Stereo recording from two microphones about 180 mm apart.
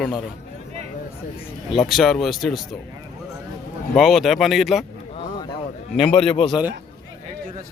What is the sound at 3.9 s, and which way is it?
Speech, centre (ahead or behind).